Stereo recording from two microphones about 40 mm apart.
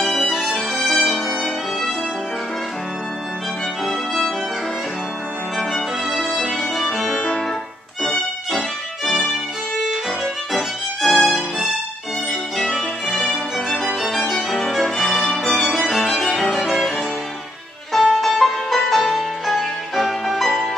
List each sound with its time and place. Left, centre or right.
0.2 s music: centre
0.8 s violin: centre
3.8 s violin: centre
5.6 s music: centre
7.2 s music: centre
8.0 s music: centre
9.8 s violin: centre
12.3 s music: centre
13.7 s violin: centre
16.6 s music: centre
18.0 s music: centre